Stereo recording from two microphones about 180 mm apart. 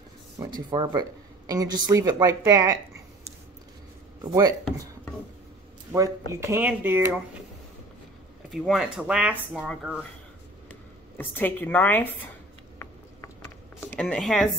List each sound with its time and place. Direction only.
0.6 s speech: 25° right (ahead or behind)
4.2 s speech: 20° right (ahead or behind)
5.9 s speech: 20° right (ahead or behind)
8.5 s speech: centre (ahead or behind)
11.1 s speech: 10° left (ahead or behind)
13.9 s speech: 5° left (ahead or behind)